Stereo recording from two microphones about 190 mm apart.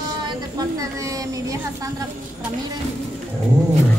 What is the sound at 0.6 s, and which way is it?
A man's voice, 15° right (ahead or behind).